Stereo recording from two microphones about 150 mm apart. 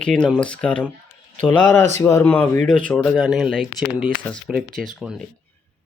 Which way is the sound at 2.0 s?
20° left (ahead or behind).